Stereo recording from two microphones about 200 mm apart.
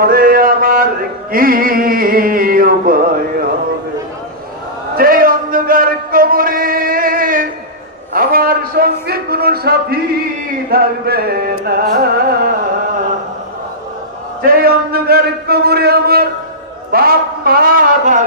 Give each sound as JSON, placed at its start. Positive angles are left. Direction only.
{"t": 0.0, "sound": "mantra", "side_deg": -45}
{"t": 1.3, "sound": "music", "side_deg": -45}
{"t": 4.9, "sound": "a sound", "side_deg": -45}
{"t": 10.7, "sound": "music", "side_deg": -50}
{"t": 14.4, "sound": "a sound", "side_deg": -45}
{"t": 16.9, "sound": "speech", "side_deg": -50}